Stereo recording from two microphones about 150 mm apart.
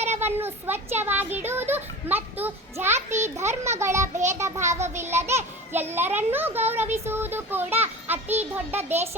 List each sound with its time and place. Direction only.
0.2 s a child's voice: 15° right (ahead or behind)
4.6 s speech: 50° right (ahead or behind)
5.7 s a child's voice: 15° right (ahead or behind)